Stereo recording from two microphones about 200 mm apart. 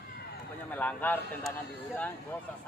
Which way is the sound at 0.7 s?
10° left (ahead or behind).